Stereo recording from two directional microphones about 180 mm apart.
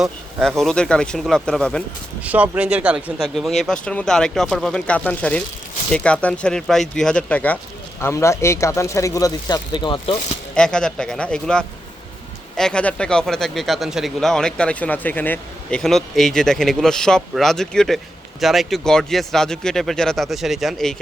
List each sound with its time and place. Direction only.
0.0 s speech: centre (ahead or behind)
2.2 s speech: 10° right (ahead or behind); by 10.2 s 25° left (ahead or behind)
10.5 s speech: 5° left (ahead or behind)